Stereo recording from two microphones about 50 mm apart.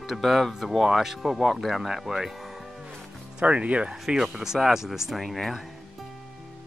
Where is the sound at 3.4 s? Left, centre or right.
Right.